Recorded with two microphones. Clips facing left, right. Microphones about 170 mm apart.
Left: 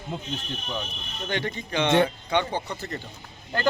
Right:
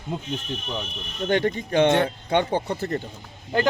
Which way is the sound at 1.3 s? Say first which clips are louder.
Right 7 dB; 45° right (ahead or behind).